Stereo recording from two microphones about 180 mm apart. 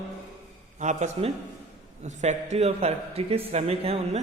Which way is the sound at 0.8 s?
40° right (ahead or behind).